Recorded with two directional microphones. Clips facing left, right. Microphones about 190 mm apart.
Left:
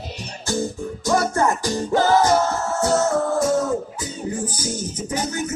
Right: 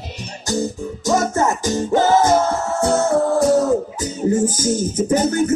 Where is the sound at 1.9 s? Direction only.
25° right (ahead or behind).